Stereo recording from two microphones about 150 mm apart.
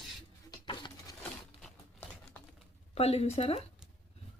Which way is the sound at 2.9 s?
45° left (ahead or behind).